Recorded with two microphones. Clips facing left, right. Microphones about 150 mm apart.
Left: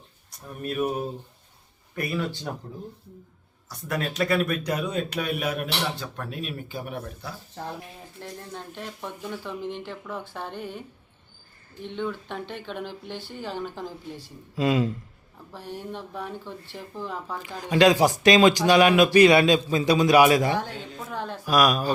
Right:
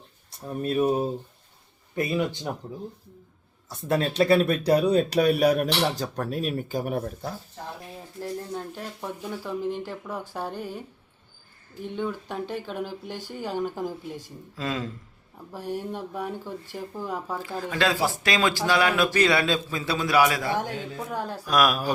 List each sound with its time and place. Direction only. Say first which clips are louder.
0.3 s speech: right 4 dB; 30° right (ahead or behind)
2.0 s speech: right 3 dB; 20° right (ahead or behind)
3.7 s speech: right 4 dB; 25° right (ahead or behind); by 7.3 s 45° right (ahead or behind)
8.2 s speech: right 6 dB; 5° right (ahead or behind)
13.1 s speech: right 1 dB; 45° right (ahead or behind)
13.4 s speech: right 5 dB; 10° right (ahead or behind)
14.5 s speech: left 7 dB; 15° left (ahead or behind)
15.7 s speech: right 3 dB; 10° right (ahead or behind)
17.6 s speech: left 7 dB; 20° left (ahead or behind)
20.6 s speech: right 2 dB; 15° right (ahead or behind)
21.4 s speech: left 2 dB; centre (ahead or behind)